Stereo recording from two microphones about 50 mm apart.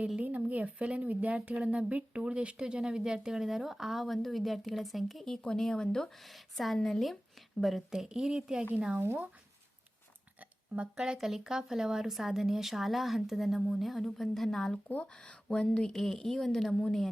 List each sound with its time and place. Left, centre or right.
0.2 s speech: right; by 5.2 s centre
5.2 s a woman's voice: centre
6.2 s speech: centre
7.9 s speech: centre
9.0 s speech: right
10.9 s speech: centre
15.0 s speech: centre
15.9 s a woman's voice: centre